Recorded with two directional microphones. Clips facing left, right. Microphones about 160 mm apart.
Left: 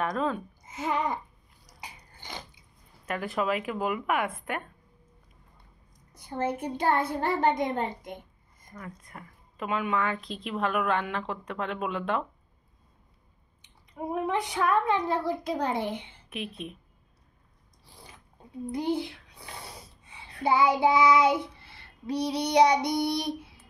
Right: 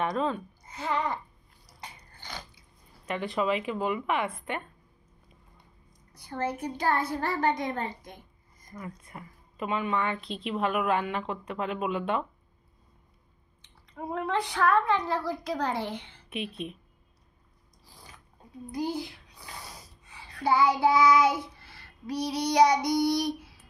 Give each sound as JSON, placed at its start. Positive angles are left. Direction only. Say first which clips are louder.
{"t": 0.0, "sound": "speech", "louder": "even", "side_deg": 0}
{"t": 0.7, "sound": "a child's voice", "louder": "left 1 dB", "side_deg": 20}
{"t": 1.8, "sound": "a sound", "louder": "even", "side_deg": 20}
{"t": 3.1, "sound": "speech", "louder": "right 1 dB", "side_deg": 5}
{"t": 6.2, "sound": "a child's voice", "louder": "left 2 dB", "side_deg": 25}
{"t": 8.7, "sound": "speech", "louder": "right 2 dB", "side_deg": -5}
{"t": 14.1, "sound": "a child's voice", "louder": "left 1 dB", "side_deg": 15}
{"t": 16.3, "sound": "speech", "louder": "right 2 dB", "side_deg": 0}
{"t": 18.7, "sound": "a child's voice", "louder": "left 3 dB", "side_deg": 25}
{"t": 20.1, "sound": "child singing", "louder": "even", "side_deg": 20}